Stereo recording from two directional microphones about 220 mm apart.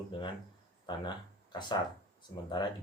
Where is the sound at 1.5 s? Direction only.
20° left (ahead or behind).